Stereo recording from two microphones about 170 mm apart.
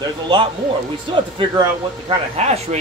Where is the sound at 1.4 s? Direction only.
30° right (ahead or behind).